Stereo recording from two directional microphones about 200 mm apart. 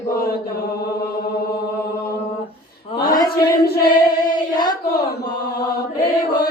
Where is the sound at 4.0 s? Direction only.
20° left (ahead or behind).